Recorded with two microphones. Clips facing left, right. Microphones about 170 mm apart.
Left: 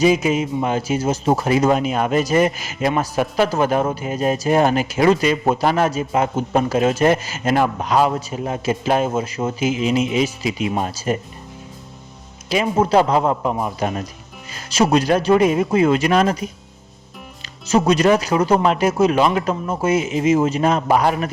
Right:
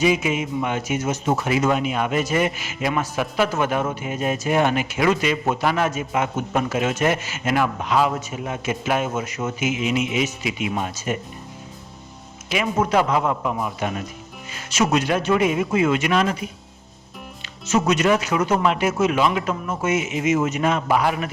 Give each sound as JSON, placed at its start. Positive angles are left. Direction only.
{"t": 0.0, "sound": "a man's voice", "side_deg": 40}
{"t": 12.5, "sound": "a man's voice", "side_deg": 30}
{"t": 17.7, "sound": "a man's voice", "side_deg": 35}